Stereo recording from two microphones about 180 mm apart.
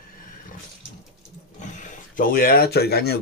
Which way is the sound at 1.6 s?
45° left (ahead or behind).